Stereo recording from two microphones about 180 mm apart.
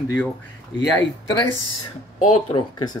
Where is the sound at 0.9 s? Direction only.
20° left (ahead or behind).